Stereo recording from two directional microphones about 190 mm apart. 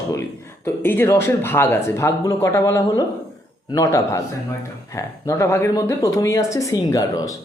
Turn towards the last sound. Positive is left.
turn(degrees=20)  # may be behind; listen again after turning